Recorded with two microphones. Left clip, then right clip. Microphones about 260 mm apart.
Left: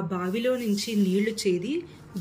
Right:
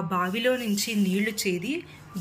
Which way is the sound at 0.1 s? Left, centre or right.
Centre.